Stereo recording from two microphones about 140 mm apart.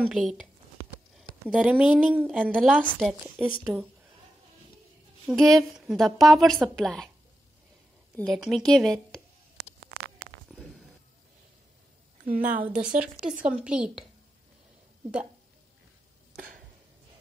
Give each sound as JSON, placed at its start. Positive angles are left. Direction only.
{"t": 0.1, "sound": "a woman's voice", "side_deg": 0}
{"t": 1.5, "sound": "a woman's voice", "side_deg": -5}
{"t": 2.5, "sound": "a woman's voice", "side_deg": 5}
{"t": 5.3, "sound": "a woman's voice", "side_deg": 0}
{"t": 8.2, "sound": "a woman's voice", "side_deg": 0}
{"t": 12.3, "sound": "a woman's voice", "side_deg": -90}
{"t": 12.5, "sound": "a woman's voice", "side_deg": -10}